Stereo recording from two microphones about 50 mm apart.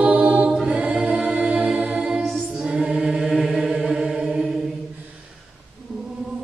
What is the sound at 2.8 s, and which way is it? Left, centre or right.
Chant, centre.